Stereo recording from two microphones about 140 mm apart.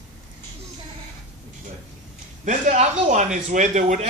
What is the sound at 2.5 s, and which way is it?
Speech, 60° right (ahead or behind).